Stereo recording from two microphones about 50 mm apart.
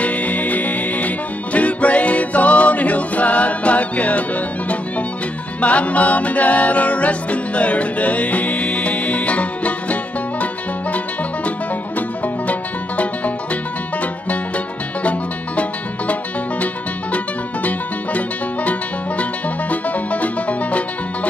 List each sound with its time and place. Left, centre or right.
0.0 s music: left
5.6 s music: left
12.4 s music: left
17.6 s music: left